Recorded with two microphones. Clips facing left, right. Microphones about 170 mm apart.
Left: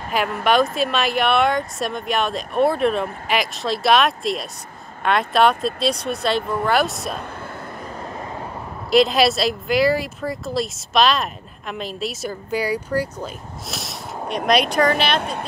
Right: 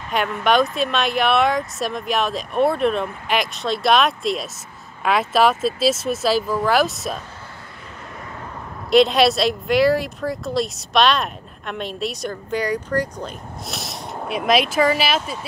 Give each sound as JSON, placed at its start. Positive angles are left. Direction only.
{"t": 0.4, "sound": "speech", "side_deg": 0}
{"t": 8.9, "sound": "speech", "side_deg": 0}
{"t": 15.1, "sound": "speech", "side_deg": 60}